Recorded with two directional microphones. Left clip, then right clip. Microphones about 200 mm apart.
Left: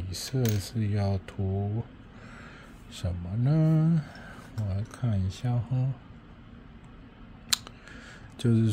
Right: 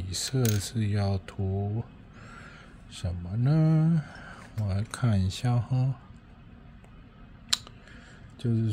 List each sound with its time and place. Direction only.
0.1 s speech: 10° right (ahead or behind)
2.3 s a sound: centre (ahead or behind)
4.6 s speech: 20° right (ahead or behind)
7.4 s scissors: 5° left (ahead or behind)
8.4 s speech: 15° left (ahead or behind)